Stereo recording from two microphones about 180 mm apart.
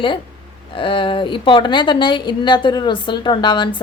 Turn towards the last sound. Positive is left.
turn(degrees=25)  # may be behind; listen again after turning